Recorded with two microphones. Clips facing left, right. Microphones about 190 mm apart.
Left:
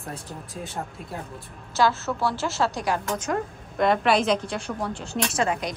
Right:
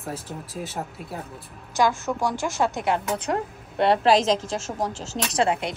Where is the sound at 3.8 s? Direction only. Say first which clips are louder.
Right 2 dB; 35° right (ahead or behind).